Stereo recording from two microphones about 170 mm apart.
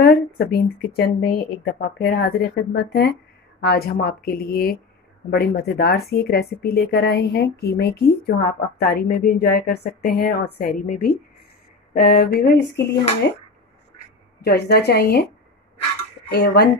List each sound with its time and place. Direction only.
0.0 s speech: 70° left (ahead or behind)
14.4 s speech: 75° left (ahead or behind)
16.3 s speech: 75° left (ahead or behind)